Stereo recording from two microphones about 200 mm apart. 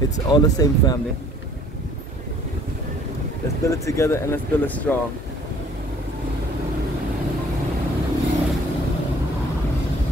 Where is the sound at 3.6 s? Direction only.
15° left (ahead or behind).